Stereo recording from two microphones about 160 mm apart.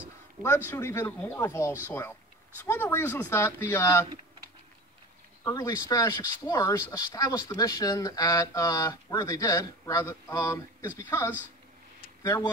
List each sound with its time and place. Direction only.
0.7 s speech: 15° left (ahead or behind)
5.4 s speech: 20° left (ahead or behind)